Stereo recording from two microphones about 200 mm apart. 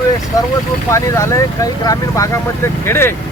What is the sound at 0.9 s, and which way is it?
Speech, 15° left (ahead or behind).